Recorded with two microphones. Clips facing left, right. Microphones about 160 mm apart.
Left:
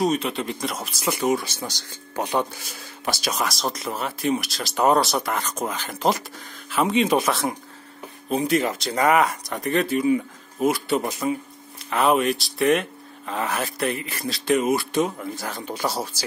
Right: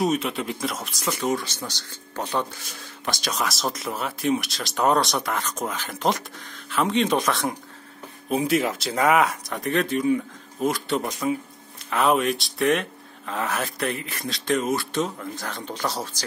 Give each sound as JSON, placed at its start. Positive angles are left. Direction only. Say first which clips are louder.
{"t": 0.0, "sound": "speech", "louder": "left 1 dB", "side_deg": 0}